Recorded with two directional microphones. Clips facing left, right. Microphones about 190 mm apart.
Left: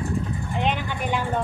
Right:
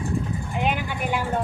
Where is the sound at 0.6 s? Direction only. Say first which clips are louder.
Even; 10° right (ahead or behind).